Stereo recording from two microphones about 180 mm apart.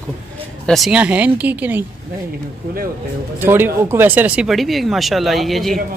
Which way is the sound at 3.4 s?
10° right (ahead or behind).